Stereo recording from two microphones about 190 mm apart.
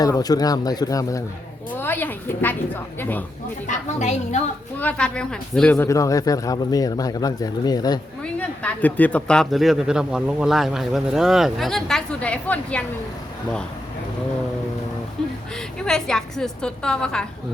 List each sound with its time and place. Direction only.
0.0 s a woman's voice: 20° left (ahead or behind)
3.7 s speech: 35° left (ahead or behind)
4.8 s speech: 5° left (ahead or behind)
8.2 s a man's voice: 5° left (ahead or behind)
15.2 s a man's voice: 5° left (ahead or behind)